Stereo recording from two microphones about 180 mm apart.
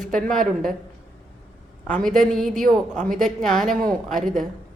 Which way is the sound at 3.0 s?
45° right (ahead or behind).